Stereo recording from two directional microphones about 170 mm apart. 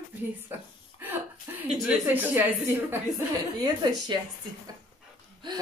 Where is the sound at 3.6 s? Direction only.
25° right (ahead or behind).